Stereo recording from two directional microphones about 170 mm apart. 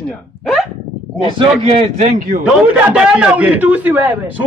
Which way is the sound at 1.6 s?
40° right (ahead or behind).